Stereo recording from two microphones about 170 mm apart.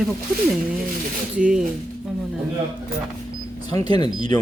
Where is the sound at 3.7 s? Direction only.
25° left (ahead or behind).